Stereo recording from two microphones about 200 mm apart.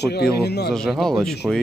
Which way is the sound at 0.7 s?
Centre (ahead or behind).